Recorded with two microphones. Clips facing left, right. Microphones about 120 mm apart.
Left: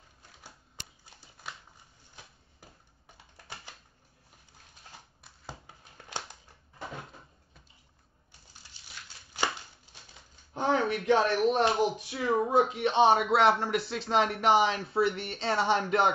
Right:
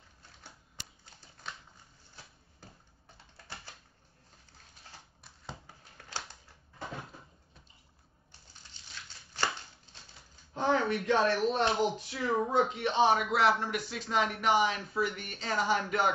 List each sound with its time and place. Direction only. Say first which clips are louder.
5.9 s a sound: left 2 dB; 20° left (ahead or behind)
8.8 s tearing: even; 10° left (ahead or behind)
10.5 s speech: left 1 dB; 20° left (ahead or behind)